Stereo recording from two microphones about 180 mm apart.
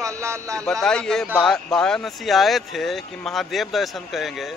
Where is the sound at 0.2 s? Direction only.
15° right (ahead or behind).